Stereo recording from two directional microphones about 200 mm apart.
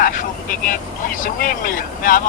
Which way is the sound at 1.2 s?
45° left (ahead or behind).